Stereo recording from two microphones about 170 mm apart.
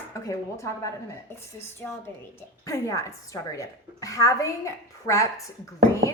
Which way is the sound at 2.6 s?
20° left (ahead or behind).